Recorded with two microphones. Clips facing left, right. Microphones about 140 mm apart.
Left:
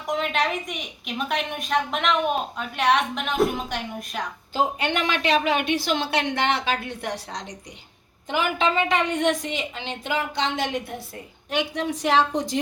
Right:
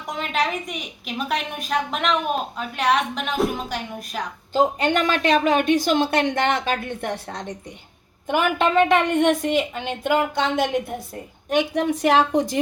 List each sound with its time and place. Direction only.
0.0 s a woman's voice: centre (ahead or behind)
4.5 s a woman's voice: 40° right (ahead or behind)